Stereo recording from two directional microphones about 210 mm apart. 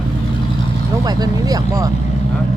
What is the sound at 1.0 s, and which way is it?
Speech, 20° right (ahead or behind).